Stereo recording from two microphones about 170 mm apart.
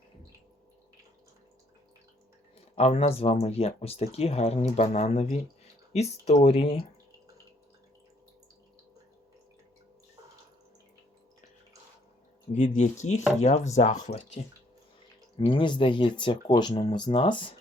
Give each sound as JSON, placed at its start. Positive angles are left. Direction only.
{"t": 2.7, "sound": "speech", "side_deg": 40}
{"t": 12.5, "sound": "speech", "side_deg": 45}